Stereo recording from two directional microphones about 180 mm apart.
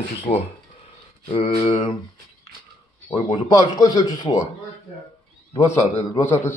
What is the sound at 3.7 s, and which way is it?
Speech, 20° left (ahead or behind).